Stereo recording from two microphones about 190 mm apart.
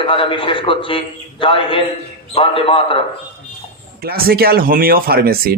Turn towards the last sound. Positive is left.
turn(degrees=-55)  # may be behind; listen again after turning